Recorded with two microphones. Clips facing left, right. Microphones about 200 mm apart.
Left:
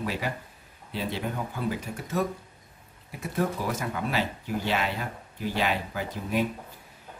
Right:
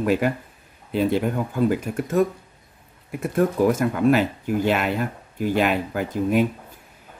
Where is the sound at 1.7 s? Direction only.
50° right (ahead or behind).